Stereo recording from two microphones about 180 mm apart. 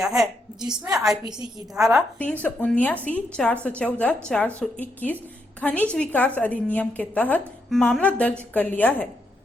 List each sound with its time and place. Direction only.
0.0 s a woman's voice: centre (ahead or behind)
0.6 s a woman's voice: 25° right (ahead or behind)
1.7 s a woman's voice: 5° right (ahead or behind)
2.1 s a woman's voice: 10° left (ahead or behind)